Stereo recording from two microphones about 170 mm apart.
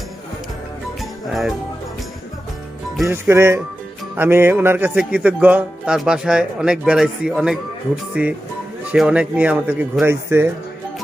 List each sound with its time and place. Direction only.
1.3 s speech: centre (ahead or behind)
3.0 s speech: 15° right (ahead or behind)